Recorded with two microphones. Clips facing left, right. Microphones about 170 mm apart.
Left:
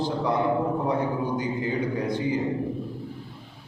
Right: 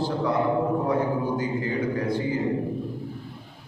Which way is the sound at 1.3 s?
20° left (ahead or behind).